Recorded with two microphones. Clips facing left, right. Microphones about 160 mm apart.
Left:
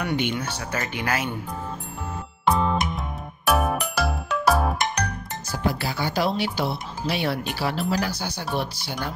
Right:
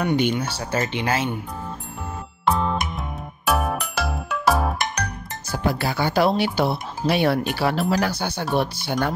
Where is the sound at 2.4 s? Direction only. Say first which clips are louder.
Even; centre (ahead or behind).